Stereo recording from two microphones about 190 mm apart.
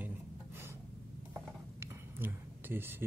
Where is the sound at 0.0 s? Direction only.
10° right (ahead or behind).